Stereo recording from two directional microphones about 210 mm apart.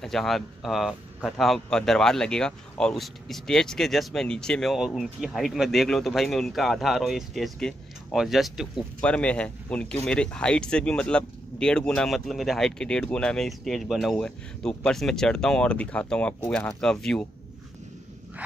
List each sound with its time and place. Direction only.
0.0 s speech: centre (ahead or behind)